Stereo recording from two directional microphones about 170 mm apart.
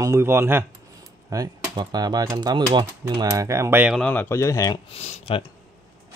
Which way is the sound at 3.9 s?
10° left (ahead or behind).